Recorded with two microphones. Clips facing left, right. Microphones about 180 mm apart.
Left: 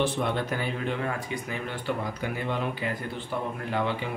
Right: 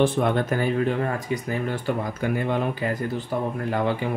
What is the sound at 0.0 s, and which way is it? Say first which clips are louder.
Speech: right 6 dB; 50° right (ahead or behind).